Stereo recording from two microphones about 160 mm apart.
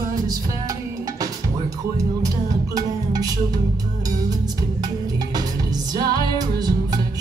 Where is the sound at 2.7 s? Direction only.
25° right (ahead or behind).